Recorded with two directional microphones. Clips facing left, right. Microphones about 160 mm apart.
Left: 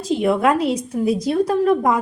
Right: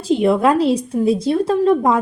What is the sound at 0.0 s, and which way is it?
A woman's voice, 30° right (ahead or behind).